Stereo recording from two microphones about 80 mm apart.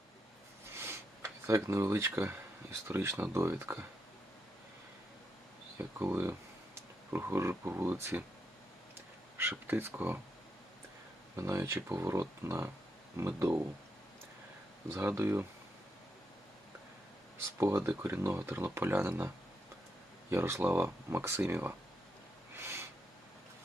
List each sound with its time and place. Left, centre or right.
0.8 s speech: right
6.7 s speech: right
9.4 s speech: right
11.3 s speech: right
14.8 s speech: right
17.6 s speech: right
20.3 s speech: right
22.5 s a sound: right